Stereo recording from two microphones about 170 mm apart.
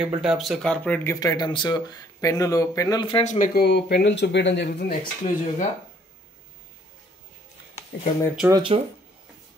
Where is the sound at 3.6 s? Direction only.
80° left.